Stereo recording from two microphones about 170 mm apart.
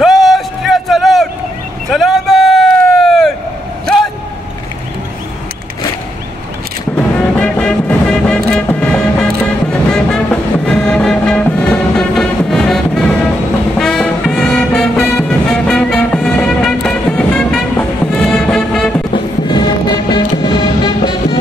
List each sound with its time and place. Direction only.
0.0 s a sound: centre (ahead or behind)
1.9 s vehicle: centre (ahead or behind)
7.3 s music: 5° left (ahead or behind)
19.1 s music: 25° left (ahead or behind)